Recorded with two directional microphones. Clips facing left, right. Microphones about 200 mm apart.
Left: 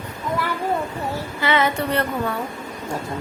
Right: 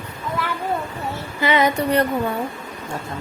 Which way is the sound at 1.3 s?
15° right (ahead or behind).